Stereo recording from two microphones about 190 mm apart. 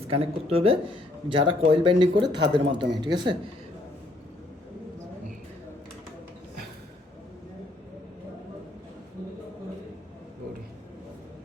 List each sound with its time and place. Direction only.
0.1 s speech: 30° right (ahead or behind)